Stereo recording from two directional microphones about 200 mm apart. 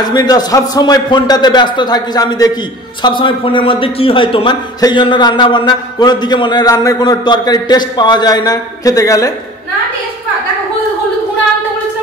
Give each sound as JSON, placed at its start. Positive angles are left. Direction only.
{"t": 0.0, "sound": "a man's voice", "side_deg": 20}